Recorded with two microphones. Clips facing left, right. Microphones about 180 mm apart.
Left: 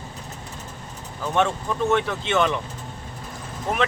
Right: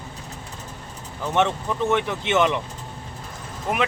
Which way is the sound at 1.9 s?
20° right (ahead or behind).